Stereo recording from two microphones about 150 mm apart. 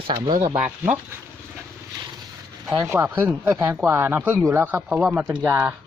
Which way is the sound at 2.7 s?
20° right (ahead or behind).